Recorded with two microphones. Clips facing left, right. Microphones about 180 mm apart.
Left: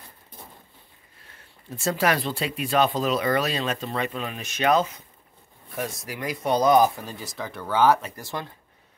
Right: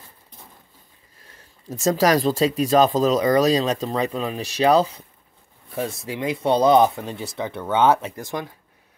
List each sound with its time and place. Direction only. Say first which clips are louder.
1.7 s speech: right 5 dB; 40° right (ahead or behind); by 8.5 s 15° right (ahead or behind)